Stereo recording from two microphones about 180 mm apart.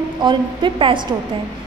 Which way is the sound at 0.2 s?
25° right (ahead or behind).